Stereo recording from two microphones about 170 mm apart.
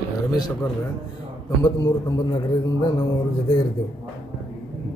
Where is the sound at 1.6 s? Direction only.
20° left (ahead or behind).